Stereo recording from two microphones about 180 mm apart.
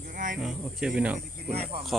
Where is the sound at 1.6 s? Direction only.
35° right (ahead or behind).